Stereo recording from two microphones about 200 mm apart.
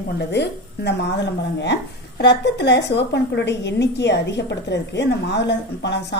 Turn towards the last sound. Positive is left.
turn(degrees=55)  # may be behind; listen again after turning